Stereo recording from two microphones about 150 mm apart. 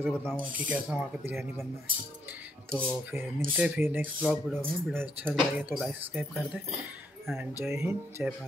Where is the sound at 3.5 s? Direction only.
10° right (ahead or behind).